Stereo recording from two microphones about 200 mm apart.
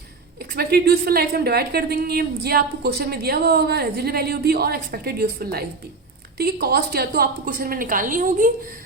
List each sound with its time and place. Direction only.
0.5 s speech: 50° right (ahead or behind)